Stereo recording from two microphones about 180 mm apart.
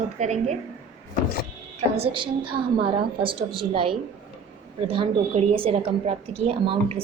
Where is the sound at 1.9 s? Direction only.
30° right (ahead or behind).